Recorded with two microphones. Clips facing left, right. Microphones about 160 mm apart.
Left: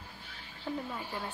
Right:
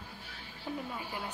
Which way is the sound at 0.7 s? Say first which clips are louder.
Left 2 dB; 10° right (ahead or behind).